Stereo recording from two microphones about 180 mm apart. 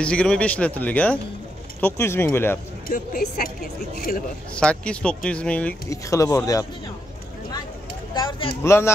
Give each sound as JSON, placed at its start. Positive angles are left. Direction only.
{"t": 0.0, "sound": "speech", "side_deg": 5}
{"t": 2.9, "sound": "speech", "side_deg": 50}
{"t": 4.6, "sound": "speech", "side_deg": 5}
{"t": 5.9, "sound": "speech", "side_deg": 15}
{"t": 8.1, "sound": "speech", "side_deg": 25}
{"t": 8.6, "sound": "speech", "side_deg": 15}